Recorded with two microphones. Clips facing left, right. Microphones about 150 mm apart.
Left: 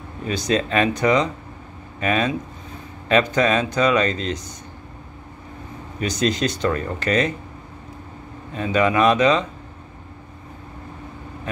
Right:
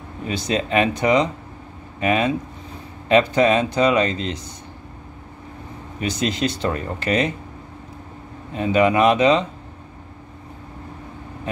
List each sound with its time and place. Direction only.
0.3 s speech: 25° right (ahead or behind)
5.9 s speech: 25° right (ahead or behind)
8.5 s speech: 20° right (ahead or behind)